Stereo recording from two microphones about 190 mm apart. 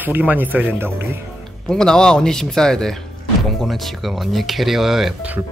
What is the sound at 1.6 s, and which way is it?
Speech, 5° left (ahead or behind).